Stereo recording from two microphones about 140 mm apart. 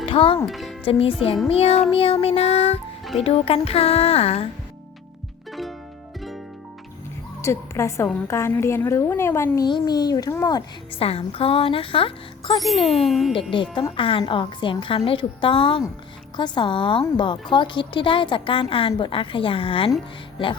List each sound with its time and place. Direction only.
0.0 s music: 40° left (ahead or behind)
0.4 s speech: centre (ahead or behind)
0.9 s a woman's voice: 40° left (ahead or behind)
5.5 s music: centre (ahead or behind)
7.4 s a woman's voice: 20° left (ahead or behind)
9.6 s a woman's voice: 30° left (ahead or behind)
11.0 s a woman's voice: 45° left (ahead or behind)
12.5 s speech: centre (ahead or behind)
12.8 s speech: 40° left (ahead or behind)
13.1 s speech: centre (ahead or behind)
13.3 s a woman's voice: 35° left (ahead or behind)